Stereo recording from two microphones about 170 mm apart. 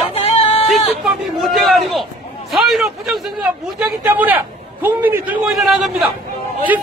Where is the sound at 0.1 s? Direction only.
35° left (ahead or behind).